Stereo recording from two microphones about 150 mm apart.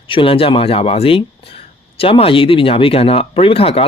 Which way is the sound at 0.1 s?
35° left (ahead or behind).